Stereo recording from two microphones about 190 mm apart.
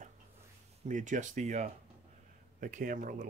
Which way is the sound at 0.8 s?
40° right (ahead or behind).